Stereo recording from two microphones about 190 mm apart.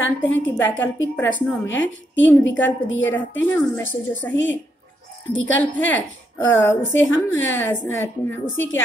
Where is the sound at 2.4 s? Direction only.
80° left.